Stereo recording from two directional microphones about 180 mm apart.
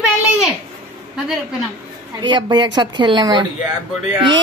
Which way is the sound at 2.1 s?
25° right (ahead or behind).